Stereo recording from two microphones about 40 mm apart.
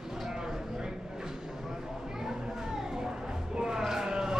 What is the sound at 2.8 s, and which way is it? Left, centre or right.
Music, centre.